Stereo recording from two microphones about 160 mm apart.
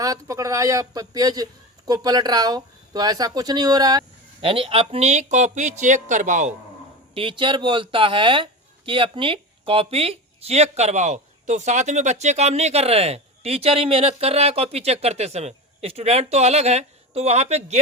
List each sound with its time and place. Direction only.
0.0 s speech: 20° right (ahead or behind); by 6.5 s 50° right (ahead or behind)
7.1 s speech: 35° right (ahead or behind)